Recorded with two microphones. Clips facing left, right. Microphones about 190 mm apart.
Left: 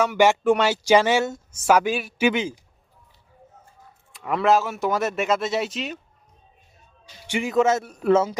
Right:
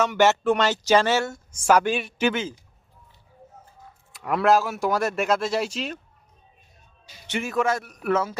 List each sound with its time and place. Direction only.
0.0 s speech: 10° left (ahead or behind)
1.6 s speech: 5° left (ahead or behind)
2.2 s speech: 15° left (ahead or behind)
4.2 s speech: centre (ahead or behind)
7.3 s a man's voice: 15° left (ahead or behind)